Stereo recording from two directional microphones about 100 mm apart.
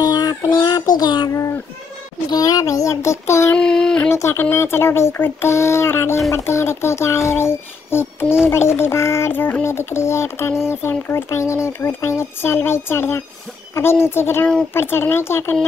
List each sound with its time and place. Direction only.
0.0 s child singing: 40° left (ahead or behind)
2.3 s speech: 40° left (ahead or behind)
3.5 s a sound: 5° left (ahead or behind)
4.1 s speech: 25° left (ahead or behind)